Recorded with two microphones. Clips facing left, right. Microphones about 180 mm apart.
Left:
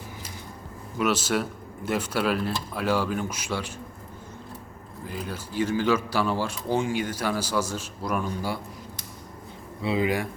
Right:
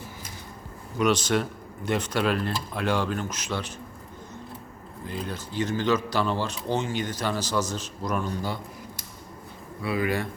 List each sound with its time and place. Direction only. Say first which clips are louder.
0.9 s speech: right 2 dB; 5° left (ahead or behind)
5.0 s speech: right 1 dB; 10° left (ahead or behind)
9.8 s speech: left 2 dB; 20° left (ahead or behind)